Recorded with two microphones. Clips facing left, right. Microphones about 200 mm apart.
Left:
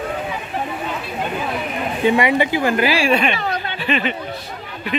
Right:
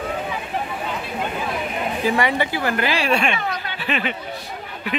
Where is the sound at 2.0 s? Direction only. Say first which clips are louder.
Left 5 dB; 20° left (ahead or behind).